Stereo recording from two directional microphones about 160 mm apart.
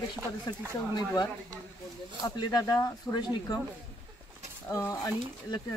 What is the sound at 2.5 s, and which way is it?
Speech, 25° left (ahead or behind).